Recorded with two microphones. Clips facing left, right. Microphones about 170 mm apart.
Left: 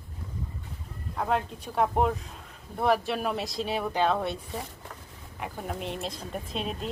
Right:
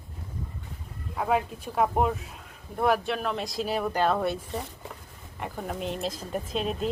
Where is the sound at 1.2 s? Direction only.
5° right (ahead or behind).